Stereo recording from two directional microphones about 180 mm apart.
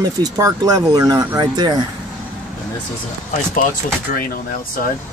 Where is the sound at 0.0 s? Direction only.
20° right (ahead or behind).